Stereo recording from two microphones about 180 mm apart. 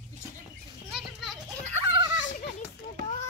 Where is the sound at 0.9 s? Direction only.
Centre (ahead or behind).